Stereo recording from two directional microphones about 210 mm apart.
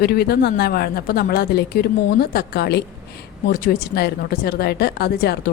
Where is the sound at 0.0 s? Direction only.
50° left (ahead or behind).